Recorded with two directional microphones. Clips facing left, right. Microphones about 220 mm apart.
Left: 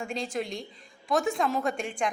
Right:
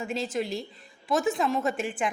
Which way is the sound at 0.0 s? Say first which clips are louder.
Right 2 dB; 5° right (ahead or behind).